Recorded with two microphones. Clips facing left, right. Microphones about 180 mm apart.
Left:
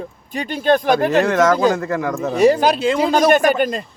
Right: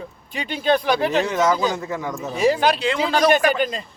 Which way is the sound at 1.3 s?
90° left.